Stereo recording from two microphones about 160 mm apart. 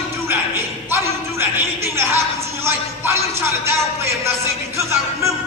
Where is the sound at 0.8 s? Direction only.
15° right (ahead or behind).